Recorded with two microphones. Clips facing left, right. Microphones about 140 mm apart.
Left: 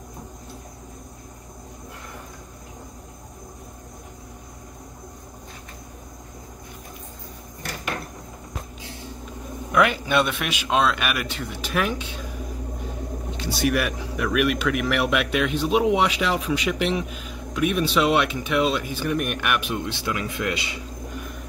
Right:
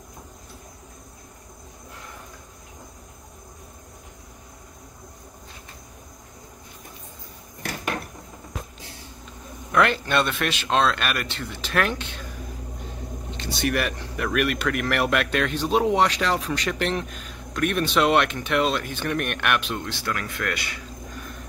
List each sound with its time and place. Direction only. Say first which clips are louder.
9.7 s a man's voice: left 1 dB; 10° left (ahead or behind)
13.4 s speech: left 2 dB; 5° left (ahead or behind); by 20.8 s 20° left (ahead or behind)